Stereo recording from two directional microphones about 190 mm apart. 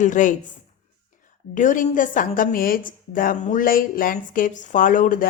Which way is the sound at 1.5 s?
45° left (ahead or behind).